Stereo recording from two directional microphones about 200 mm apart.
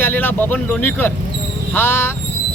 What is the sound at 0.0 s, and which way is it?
Speech, 10° left (ahead or behind).